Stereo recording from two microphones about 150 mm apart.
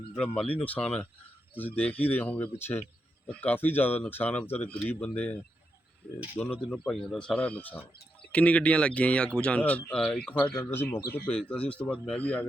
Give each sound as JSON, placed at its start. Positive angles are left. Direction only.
{"t": 0.2, "sound": "speech", "side_deg": 10}